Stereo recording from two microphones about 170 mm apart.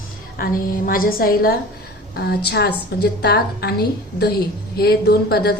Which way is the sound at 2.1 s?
75° left (ahead or behind).